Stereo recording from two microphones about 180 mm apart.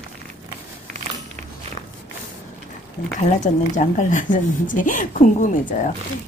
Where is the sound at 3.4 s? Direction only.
45° left (ahead or behind).